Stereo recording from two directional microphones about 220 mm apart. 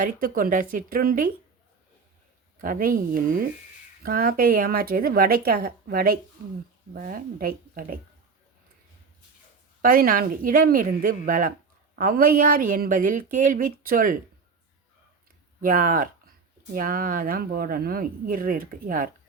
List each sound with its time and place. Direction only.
0.0 s speech: 40° right (ahead or behind)
2.6 s speech: 40° right (ahead or behind)
9.8 s speech: 40° right (ahead or behind)
15.6 s speech: 40° right (ahead or behind)